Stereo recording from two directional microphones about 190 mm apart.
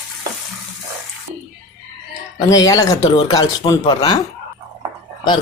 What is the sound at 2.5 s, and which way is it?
Speech, 20° left (ahead or behind).